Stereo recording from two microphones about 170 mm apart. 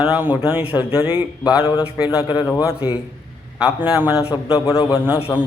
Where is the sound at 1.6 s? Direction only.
30° left (ahead or behind).